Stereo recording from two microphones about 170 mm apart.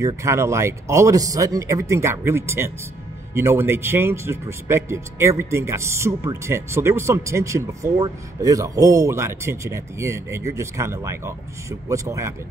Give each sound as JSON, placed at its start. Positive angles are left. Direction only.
{"t": 0.0, "sound": "speech", "side_deg": -15}